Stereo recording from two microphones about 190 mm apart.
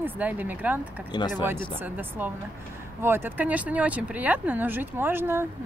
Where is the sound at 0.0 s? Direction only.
10° right (ahead or behind).